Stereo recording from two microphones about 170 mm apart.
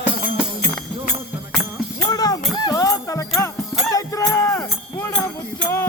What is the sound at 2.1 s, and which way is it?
Music, 20° left (ahead or behind).